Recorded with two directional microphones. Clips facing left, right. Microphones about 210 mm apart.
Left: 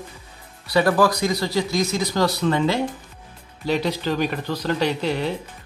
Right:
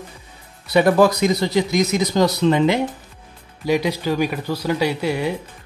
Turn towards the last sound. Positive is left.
turn(degrees=-10)  # may be behind; listen again after turning